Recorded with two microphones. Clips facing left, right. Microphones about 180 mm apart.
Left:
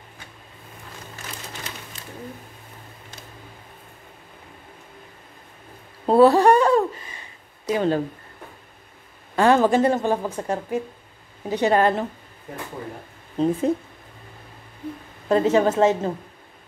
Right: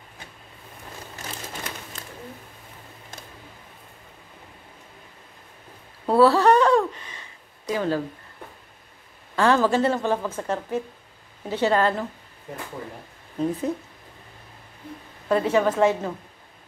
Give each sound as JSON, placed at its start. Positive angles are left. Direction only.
{"t": 6.0, "sound": "a sound", "side_deg": 20}
{"t": 7.7, "sound": "speech", "side_deg": 20}
{"t": 9.3, "sound": "a woman's voice", "side_deg": 20}
{"t": 13.4, "sound": "speech", "side_deg": 25}
{"t": 15.2, "sound": "speech", "side_deg": 25}